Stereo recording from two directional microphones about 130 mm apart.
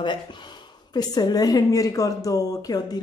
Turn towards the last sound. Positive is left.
turn(degrees=30)  # may be behind; listen again after turning